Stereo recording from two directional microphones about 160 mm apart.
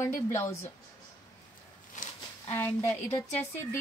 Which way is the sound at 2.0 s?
50° left (ahead or behind).